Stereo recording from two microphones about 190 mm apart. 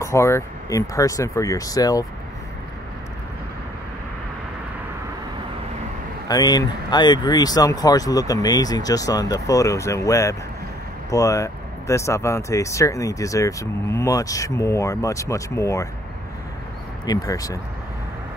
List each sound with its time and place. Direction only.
0.0 s speech: 15° left (ahead or behind)
6.2 s speech: 20° left (ahead or behind)
17.0 s speech: 20° left (ahead or behind)